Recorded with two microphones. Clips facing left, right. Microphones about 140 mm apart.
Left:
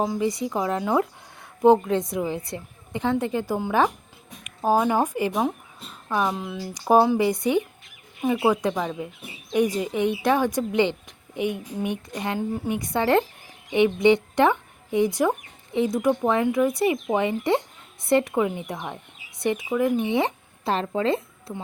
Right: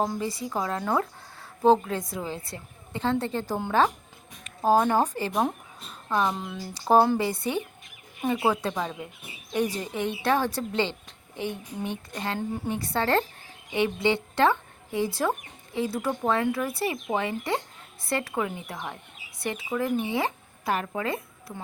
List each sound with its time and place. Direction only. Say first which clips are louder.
0.0 s a woman's voice: left 3 dB; 10° left (ahead or behind)
0.3 s a woman's voice: left 5 dB; 20° left (ahead or behind)
5.3 s speech: left 1 dB; 5° right (ahead or behind)
6.1 s a woman's voice: left 1 dB; 10° left (ahead or behind); by 21.6 s 25° left (ahead or behind)